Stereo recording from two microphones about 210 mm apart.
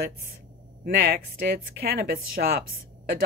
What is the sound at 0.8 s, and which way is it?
Speech, 45° right (ahead or behind).